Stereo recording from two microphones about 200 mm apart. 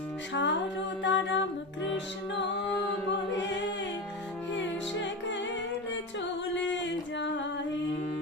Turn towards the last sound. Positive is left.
turn(degrees=65)  # may be behind; listen again after turning